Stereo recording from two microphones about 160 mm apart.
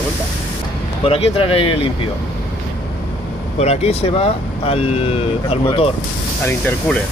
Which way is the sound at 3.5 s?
40° left (ahead or behind).